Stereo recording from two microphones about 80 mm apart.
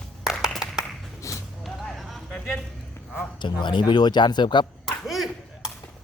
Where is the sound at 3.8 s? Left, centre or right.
Left.